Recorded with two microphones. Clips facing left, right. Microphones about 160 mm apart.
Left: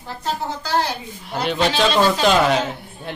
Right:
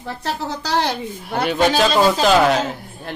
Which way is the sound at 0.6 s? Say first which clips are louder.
Right 2 dB; 85° right.